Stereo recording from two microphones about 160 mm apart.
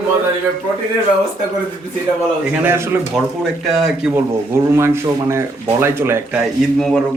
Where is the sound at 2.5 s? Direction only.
15° right (ahead or behind).